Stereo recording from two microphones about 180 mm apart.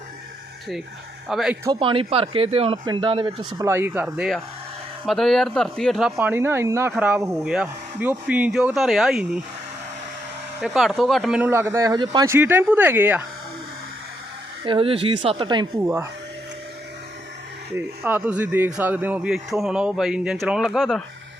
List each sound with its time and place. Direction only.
1.3 s a man's voice: centre (ahead or behind)
1.6 s speech: 25° right (ahead or behind)
3.7 s a man's voice: 10° right (ahead or behind)
6.1 s a man's voice: 10° right (ahead or behind)
10.6 s speech: centre (ahead or behind); by 12.4 s 20° right (ahead or behind)
12.4 s speech: 10° right (ahead or behind)
14.6 s speech: 30° right (ahead or behind)
17.7 s a man's voice: 10° right (ahead or behind)